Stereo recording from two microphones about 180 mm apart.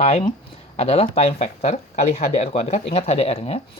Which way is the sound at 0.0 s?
35° left (ahead or behind).